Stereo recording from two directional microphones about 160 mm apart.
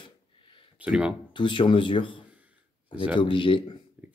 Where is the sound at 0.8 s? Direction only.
10° right (ahead or behind).